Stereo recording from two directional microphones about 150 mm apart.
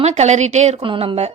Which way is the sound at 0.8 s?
35° right (ahead or behind).